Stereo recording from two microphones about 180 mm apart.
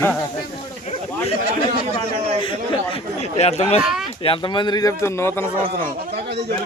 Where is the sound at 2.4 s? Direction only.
30° left (ahead or behind); by 5.5 s 15° left (ahead or behind).